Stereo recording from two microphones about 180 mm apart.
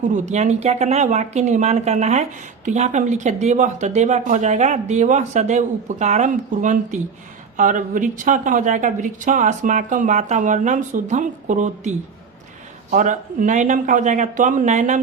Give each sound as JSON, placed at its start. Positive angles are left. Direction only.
{"t": 0.1, "sound": "a woman's voice", "side_deg": -40}